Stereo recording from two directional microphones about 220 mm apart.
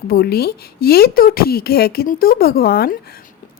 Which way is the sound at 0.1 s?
45° left (ahead or behind).